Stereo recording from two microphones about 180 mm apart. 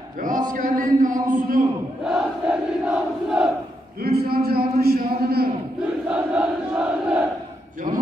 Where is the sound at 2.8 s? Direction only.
5° right (ahead or behind).